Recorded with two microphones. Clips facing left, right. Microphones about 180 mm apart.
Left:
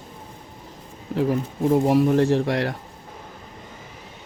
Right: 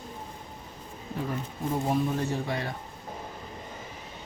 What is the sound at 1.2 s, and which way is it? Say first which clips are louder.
Speech: left 11 dB; 85° left.